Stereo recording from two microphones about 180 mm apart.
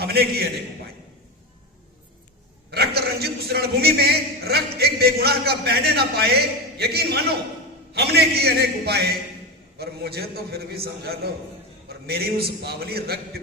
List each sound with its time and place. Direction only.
0.0 s a man's voice: 60° right (ahead or behind)
2.6 s a man's voice: 60° right (ahead or behind)